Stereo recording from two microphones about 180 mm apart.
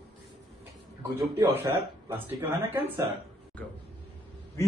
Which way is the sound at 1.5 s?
15° right (ahead or behind).